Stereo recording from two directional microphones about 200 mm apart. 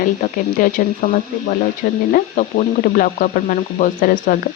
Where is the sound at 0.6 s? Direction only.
45° left (ahead or behind).